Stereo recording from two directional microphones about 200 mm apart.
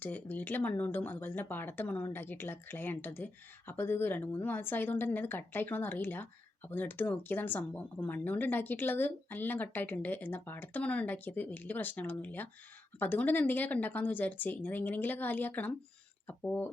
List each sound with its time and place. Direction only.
0.0 s speech: 10° left (ahead or behind)